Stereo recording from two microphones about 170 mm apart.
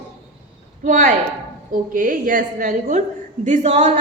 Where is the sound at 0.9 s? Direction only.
45° right (ahead or behind).